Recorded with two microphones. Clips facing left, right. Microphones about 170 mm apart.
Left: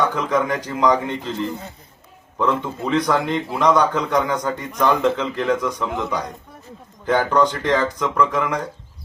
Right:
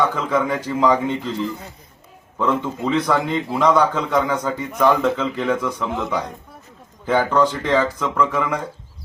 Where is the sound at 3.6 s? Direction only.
5° right (ahead or behind).